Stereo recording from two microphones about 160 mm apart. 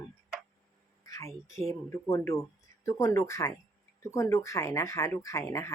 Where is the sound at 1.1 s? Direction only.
20° left (ahead or behind).